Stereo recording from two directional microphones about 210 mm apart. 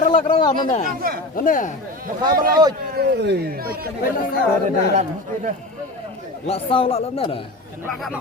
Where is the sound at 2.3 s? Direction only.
45° right (ahead or behind).